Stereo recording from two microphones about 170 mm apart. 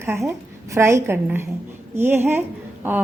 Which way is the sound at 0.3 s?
15° right (ahead or behind).